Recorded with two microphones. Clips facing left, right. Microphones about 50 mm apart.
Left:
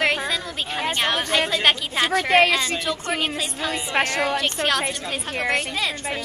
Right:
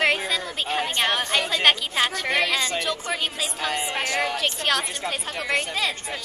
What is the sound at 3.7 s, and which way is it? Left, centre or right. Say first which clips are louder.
Speech: left 5 dB; left.